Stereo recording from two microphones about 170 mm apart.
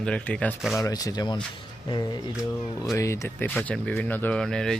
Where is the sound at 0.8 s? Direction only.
20° left (ahead or behind).